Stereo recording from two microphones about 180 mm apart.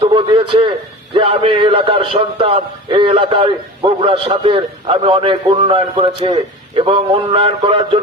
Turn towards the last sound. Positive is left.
turn(degrees=-30)  # may be behind; listen again after turning